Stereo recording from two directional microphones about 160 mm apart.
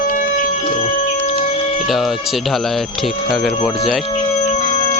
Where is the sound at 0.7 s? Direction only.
45° left (ahead or behind).